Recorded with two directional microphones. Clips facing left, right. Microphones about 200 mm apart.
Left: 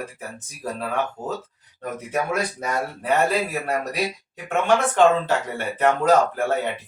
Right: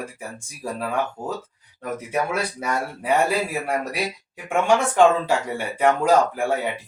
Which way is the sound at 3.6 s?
10° right (ahead or behind).